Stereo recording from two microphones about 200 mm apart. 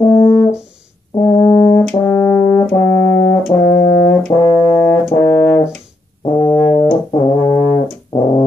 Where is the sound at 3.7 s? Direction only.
15° left (ahead or behind).